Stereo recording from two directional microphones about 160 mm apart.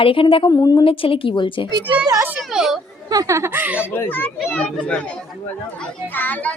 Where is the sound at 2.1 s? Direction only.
15° right (ahead or behind).